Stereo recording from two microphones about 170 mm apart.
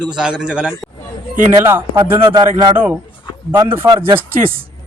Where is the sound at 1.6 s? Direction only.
15° right (ahead or behind).